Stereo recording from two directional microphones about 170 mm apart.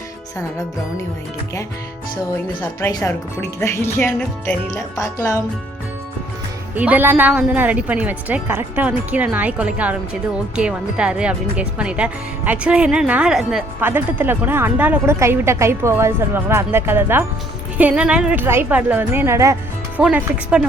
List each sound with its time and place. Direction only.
2.9 s speech: 20° left (ahead or behind)
4.7 s speech: 20° left (ahead or behind)
6.7 s speech: 10° right (ahead or behind)
20.0 s speech: 5° right (ahead or behind)